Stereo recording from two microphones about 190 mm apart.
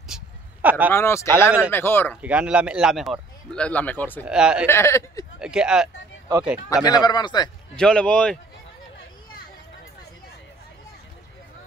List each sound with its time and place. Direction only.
0.1 s a sound: 10° right (ahead or behind)
0.9 s speech: 15° left (ahead or behind)
2.2 s a man's voice: 5° right (ahead or behind)
4.2 s a man's voice: 5° right (ahead or behind)
4.6 s speech: 15° left (ahead or behind)
5.4 s a man's voice: 5° right (ahead or behind)
6.7 s a man's voice: 20° left (ahead or behind)
7.7 s a man's voice: 5° left (ahead or behind)